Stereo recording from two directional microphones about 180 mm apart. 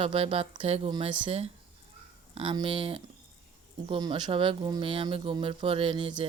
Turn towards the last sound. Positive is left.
turn(degrees=-30)  # may be behind; listen again after turning